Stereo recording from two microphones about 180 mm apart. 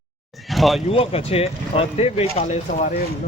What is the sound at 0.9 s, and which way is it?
Speech, 30° left (ahead or behind).